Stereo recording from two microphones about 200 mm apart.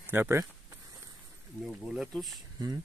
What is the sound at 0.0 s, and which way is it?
Speech, 10° right (ahead or behind).